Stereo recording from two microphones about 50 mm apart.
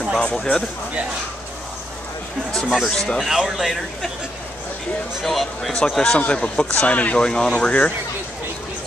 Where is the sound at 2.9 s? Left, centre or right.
Centre.